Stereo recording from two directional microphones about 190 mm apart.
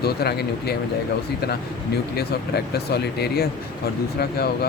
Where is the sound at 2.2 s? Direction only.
55° left (ahead or behind).